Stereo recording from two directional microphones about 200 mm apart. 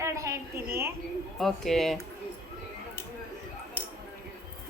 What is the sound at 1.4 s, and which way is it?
Speech, centre (ahead or behind).